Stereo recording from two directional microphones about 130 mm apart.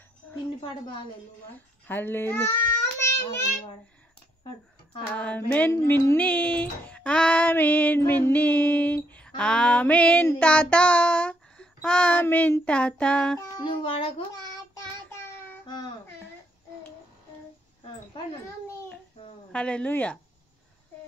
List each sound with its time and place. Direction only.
1.9 s a child's voice: 15° left (ahead or behind)
5.0 s child singing: 10° left (ahead or behind)
13.7 s child singing: 45° left (ahead or behind)
15.0 s child singing: 15° left (ahead or behind)
19.5 s child singing: 10° left (ahead or behind)